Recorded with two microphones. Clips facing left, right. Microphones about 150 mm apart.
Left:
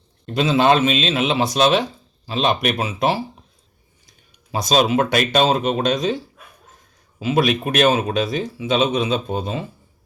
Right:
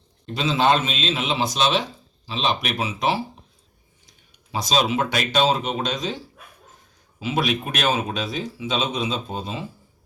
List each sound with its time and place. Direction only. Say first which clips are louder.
0.3 s speech: left 4 dB; 55° left (ahead or behind)
4.5 s speech: left 5 dB; 50° left (ahead or behind)
7.2 s speech: left 5 dB; 50° left (ahead or behind)